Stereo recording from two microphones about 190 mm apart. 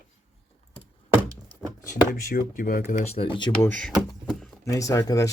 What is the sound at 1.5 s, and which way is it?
Speech, 45° left (ahead or behind).